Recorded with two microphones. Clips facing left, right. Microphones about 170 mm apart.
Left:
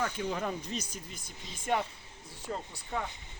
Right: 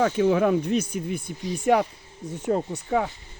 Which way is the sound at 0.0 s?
65° right (ahead or behind).